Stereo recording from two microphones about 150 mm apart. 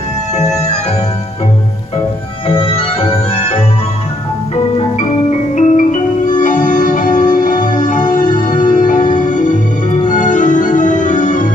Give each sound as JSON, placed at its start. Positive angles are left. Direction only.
{"t": 0.4, "sound": "music", "side_deg": 50}
{"t": 2.4, "sound": "music", "side_deg": 35}
{"t": 5.6, "sound": "music", "side_deg": 55}
{"t": 10.0, "sound": "organ", "side_deg": 60}